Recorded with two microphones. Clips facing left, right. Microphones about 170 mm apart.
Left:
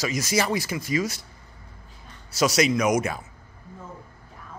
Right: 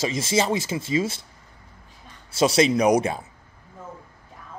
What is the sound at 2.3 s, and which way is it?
Speech, 25° right (ahead or behind).